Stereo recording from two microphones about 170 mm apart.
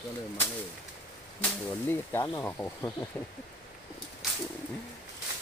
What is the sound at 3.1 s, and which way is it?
Speech, 10° left (ahead or behind).